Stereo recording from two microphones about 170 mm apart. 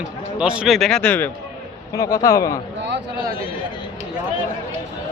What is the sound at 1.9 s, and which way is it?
Speech, 20° left (ahead or behind).